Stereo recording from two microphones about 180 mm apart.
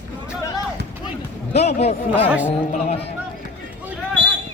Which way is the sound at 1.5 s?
35° left (ahead or behind).